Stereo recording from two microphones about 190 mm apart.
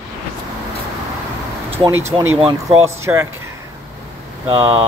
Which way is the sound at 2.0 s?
30° right (ahead or behind).